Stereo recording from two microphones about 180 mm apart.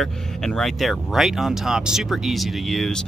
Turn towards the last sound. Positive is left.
turn(degrees=0)  # may be behind; listen again after turning